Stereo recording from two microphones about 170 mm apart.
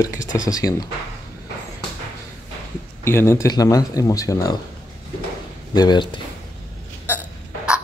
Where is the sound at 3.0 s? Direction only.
15° left (ahead or behind).